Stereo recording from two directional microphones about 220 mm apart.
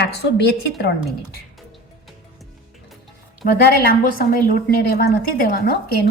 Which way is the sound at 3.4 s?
40° left (ahead or behind).